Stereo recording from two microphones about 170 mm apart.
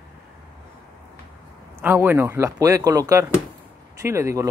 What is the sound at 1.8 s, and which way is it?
Speech, 10° right (ahead or behind).